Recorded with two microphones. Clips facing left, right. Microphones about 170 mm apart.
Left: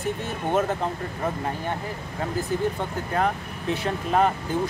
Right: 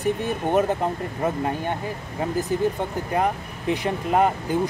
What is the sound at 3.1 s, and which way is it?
Speech, 15° right (ahead or behind).